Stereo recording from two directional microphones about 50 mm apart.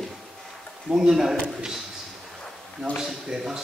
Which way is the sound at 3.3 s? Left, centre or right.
Centre.